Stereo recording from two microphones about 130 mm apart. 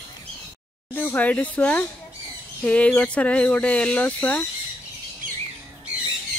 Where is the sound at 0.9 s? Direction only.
15° left (ahead or behind).